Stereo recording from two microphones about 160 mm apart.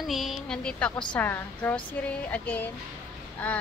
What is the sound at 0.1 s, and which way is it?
Speech, centre (ahead or behind).